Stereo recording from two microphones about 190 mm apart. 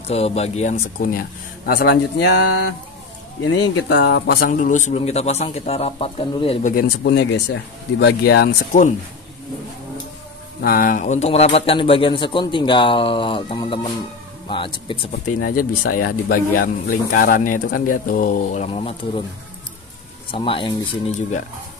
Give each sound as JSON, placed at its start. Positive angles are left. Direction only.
{"t": 0.1, "sound": "a man's voice", "side_deg": 35}
{"t": 3.4, "sound": "speech", "side_deg": 65}
{"t": 4.5, "sound": "a man's voice", "side_deg": 40}
{"t": 6.7, "sound": "speech", "side_deg": 55}
{"t": 10.6, "sound": "a man's voice", "side_deg": 50}
{"t": 15.2, "sound": "speech", "side_deg": 45}
{"t": 20.2, "sound": "a man's voice", "side_deg": 25}